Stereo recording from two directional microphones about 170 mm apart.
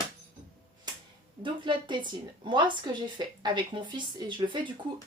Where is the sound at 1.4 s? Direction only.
30° right (ahead or behind).